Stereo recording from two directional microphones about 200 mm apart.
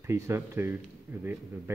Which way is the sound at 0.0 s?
15° right (ahead or behind).